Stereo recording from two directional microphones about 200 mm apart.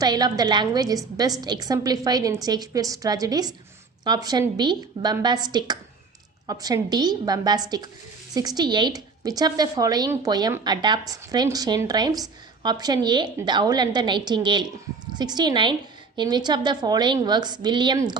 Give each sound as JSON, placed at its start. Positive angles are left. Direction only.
{"t": 0.0, "sound": "a woman's voice", "side_deg": -20}